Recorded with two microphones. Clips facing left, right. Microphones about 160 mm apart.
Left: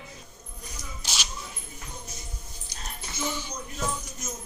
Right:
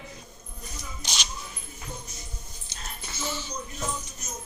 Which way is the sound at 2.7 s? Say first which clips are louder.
Left 1 dB; 25° right (ahead or behind).